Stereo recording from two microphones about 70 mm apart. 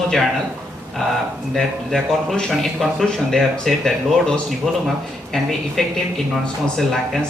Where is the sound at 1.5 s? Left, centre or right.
Centre.